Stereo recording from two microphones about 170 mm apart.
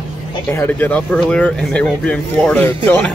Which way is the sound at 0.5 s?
10° left (ahead or behind).